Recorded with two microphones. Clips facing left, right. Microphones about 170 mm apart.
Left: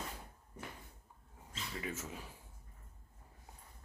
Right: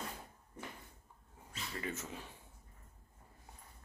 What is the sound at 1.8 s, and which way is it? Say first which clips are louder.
Speech: right 1 dB; 5° left (ahead or behind).